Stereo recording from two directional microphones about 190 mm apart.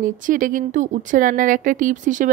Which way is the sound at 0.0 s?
45° right (ahead or behind).